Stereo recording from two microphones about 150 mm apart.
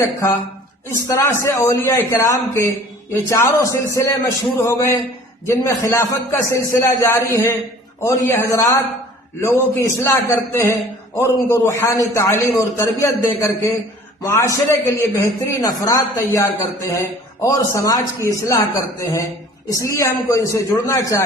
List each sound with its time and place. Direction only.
0.0 s a man's voice: 20° left (ahead or behind)